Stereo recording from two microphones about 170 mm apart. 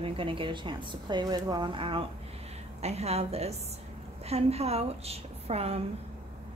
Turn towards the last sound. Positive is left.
turn(degrees=-35)  # may be behind; listen again after turning